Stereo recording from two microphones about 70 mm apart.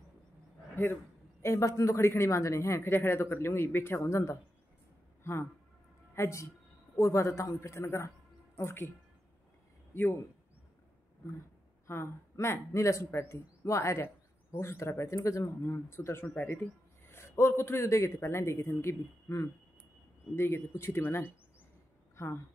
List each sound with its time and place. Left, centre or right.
1.4 s a man's voice: left
9.9 s speech: left
11.9 s speech: left
22.1 s a sound: left